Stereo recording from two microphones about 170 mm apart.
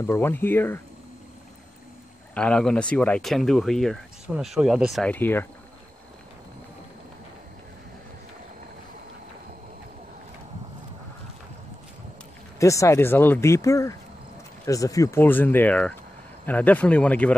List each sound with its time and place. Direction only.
0.0 s speech: 15° left (ahead or behind)
2.3 s speech: 5° left (ahead or behind)
5.1 s speech: 10° left (ahead or behind)
12.5 s speech: 20° left (ahead or behind)